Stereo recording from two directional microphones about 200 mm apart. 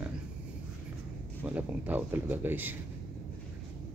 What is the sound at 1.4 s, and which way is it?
Speech, 10° right (ahead or behind).